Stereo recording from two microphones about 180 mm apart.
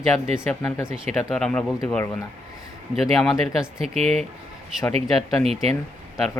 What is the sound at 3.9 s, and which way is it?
Speech, 35° right (ahead or behind).